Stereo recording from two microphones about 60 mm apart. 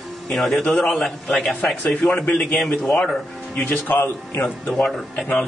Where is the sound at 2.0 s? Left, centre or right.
Left.